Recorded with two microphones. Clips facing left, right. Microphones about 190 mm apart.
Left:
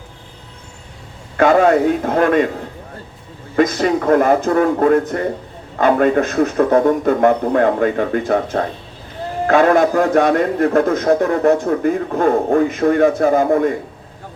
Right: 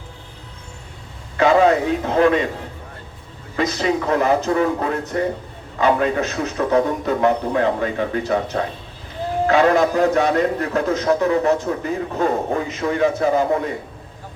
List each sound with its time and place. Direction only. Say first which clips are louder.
1.4 s a man's voice: left 3 dB; 50° left (ahead or behind)
3.5 s a man's voice: left 5 dB; 50° left (ahead or behind)